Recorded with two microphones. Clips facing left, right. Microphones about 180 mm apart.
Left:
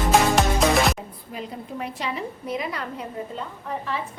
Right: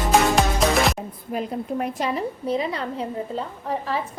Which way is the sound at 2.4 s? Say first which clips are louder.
Right 5 dB; 30° right (ahead or behind).